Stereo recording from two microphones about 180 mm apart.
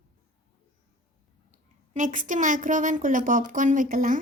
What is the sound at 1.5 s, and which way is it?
A woman's voice, 45° right (ahead or behind).